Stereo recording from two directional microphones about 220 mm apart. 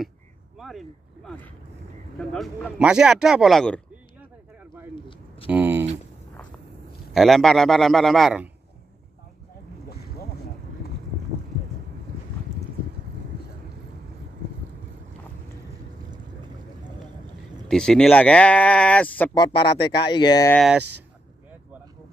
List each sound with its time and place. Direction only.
0.6 s a sound: centre (ahead or behind)
2.1 s speech: centre (ahead or behind)
4.9 s a sound: 20° left (ahead or behind)
5.5 s a sound: 10° right (ahead or behind)
7.2 s speech: centre (ahead or behind)
9.8 s boat: 45° left (ahead or behind)
17.6 s speech: 5° left (ahead or behind)
19.3 s speech: 20° left (ahead or behind)
20.5 s speech: centre (ahead or behind)